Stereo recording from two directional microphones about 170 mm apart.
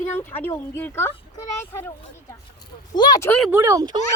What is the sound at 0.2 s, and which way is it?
Speech, 10° left (ahead or behind).